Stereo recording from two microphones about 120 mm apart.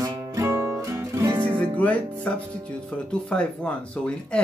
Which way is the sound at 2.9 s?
10° left (ahead or behind).